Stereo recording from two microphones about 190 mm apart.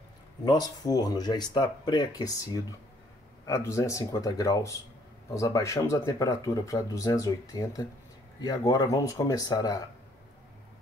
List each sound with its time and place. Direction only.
0.5 s speech: 20° left (ahead or behind)